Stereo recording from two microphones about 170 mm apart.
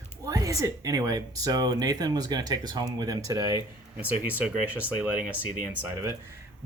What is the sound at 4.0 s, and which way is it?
Speech, 10° right (ahead or behind).